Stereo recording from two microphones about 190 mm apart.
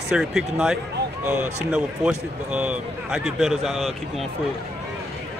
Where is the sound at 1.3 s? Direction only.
40° right (ahead or behind).